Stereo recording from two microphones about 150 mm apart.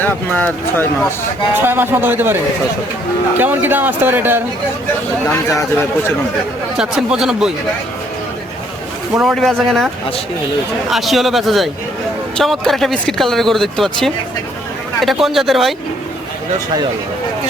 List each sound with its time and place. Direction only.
0.0 s speech: 10° left (ahead or behind)
1.6 s speech: 15° right (ahead or behind)
5.3 s speech: 20° left (ahead or behind)
6.7 s speech: 5° right (ahead or behind)
9.2 s speech: centre (ahead or behind)